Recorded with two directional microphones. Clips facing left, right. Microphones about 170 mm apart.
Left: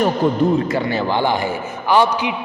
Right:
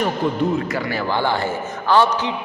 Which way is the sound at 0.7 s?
25° left (ahead or behind).